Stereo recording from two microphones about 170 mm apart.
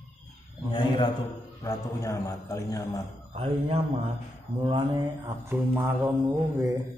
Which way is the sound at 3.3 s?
35° right (ahead or behind).